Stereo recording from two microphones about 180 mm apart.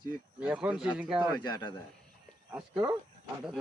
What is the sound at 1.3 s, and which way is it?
Speech, 25° left (ahead or behind).